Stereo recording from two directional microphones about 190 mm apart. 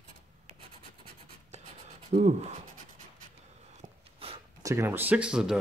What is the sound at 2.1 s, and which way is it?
Speech, 40° right (ahead or behind).